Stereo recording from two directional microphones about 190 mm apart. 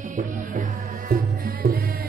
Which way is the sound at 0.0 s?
40° right (ahead or behind).